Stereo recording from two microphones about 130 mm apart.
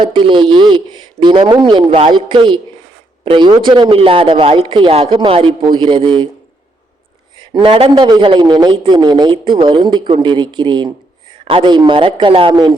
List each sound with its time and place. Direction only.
0.0 s a man's voice: 40° right (ahead or behind)
7.3 s a man's voice: 40° right (ahead or behind)